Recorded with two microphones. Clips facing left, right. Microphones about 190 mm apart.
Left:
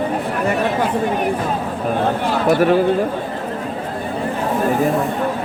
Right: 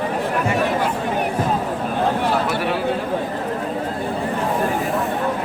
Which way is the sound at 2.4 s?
45° left (ahead or behind).